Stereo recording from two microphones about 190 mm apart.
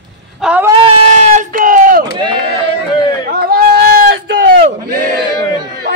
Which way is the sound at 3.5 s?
55° right (ahead or behind).